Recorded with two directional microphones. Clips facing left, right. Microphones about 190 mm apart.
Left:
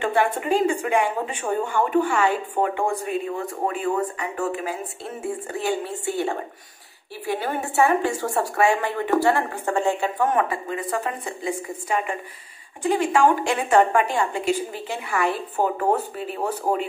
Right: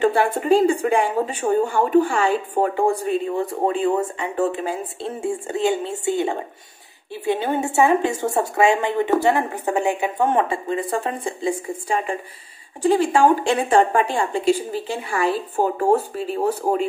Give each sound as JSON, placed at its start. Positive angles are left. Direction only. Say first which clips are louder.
{"t": 0.0, "sound": "a woman's voice", "louder": "right 3 dB", "side_deg": -35}